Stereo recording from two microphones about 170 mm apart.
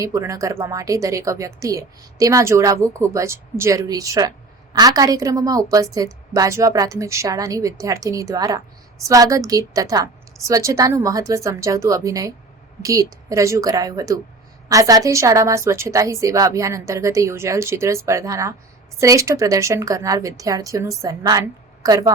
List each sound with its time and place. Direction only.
0.0 s a woman's voice: 20° right (ahead or behind)